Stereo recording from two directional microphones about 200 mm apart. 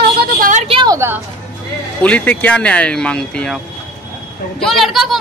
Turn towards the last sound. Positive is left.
turn(degrees=0)  # may be behind; listen again after turning